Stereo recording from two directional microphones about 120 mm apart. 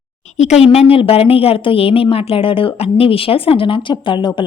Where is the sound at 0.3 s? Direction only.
70° left (ahead or behind).